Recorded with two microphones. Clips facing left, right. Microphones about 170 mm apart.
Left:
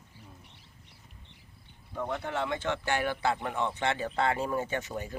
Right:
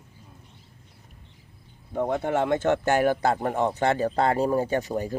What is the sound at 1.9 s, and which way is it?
Speech, 50° right (ahead or behind).